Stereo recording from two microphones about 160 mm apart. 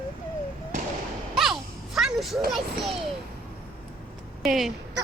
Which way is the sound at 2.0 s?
Centre (ahead or behind).